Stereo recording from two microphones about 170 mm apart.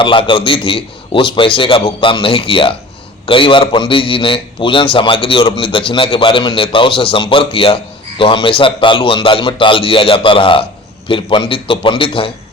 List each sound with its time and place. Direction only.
0.0 s a man's voice: 30° left (ahead or behind)